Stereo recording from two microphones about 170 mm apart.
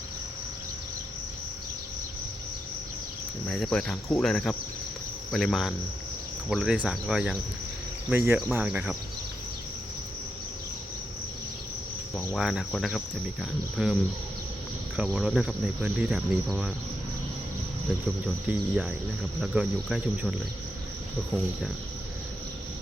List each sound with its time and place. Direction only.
3.5 s speech: centre (ahead or behind)
12.4 s speech: centre (ahead or behind)
18.4 s speech: 5° right (ahead or behind)